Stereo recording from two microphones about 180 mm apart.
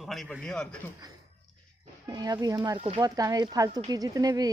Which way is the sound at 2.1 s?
20° right (ahead or behind).